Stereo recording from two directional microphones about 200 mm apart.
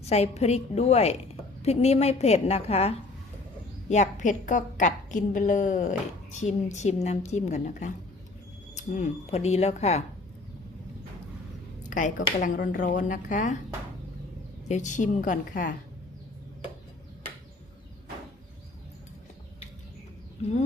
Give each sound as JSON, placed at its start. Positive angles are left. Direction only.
{"t": 0.0, "sound": "a woman's voice", "side_deg": 30}
{"t": 11.9, "sound": "a sound", "side_deg": 40}
{"t": 12.4, "sound": "a woman's voice", "side_deg": 40}
{"t": 14.7, "sound": "a woman's voice", "side_deg": 35}